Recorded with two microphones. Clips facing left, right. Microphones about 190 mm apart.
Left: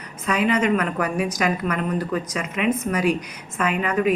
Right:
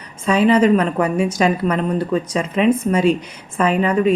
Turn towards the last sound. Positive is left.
turn(degrees=-30)  # may be behind; listen again after turning